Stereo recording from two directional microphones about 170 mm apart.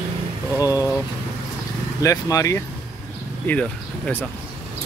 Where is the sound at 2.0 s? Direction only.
20° left (ahead or behind).